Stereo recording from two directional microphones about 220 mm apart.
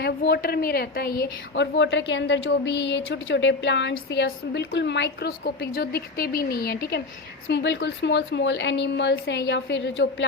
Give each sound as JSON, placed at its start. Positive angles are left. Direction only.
{"t": 0.0, "sound": "speech", "side_deg": 45}
{"t": 1.7, "sound": "speech", "side_deg": 55}